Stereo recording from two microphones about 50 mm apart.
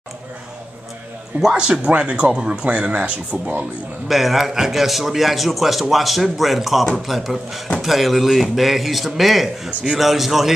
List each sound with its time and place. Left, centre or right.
1.4 s speech: centre
1.7 s a man's voice: right
4.1 s a man's voice: centre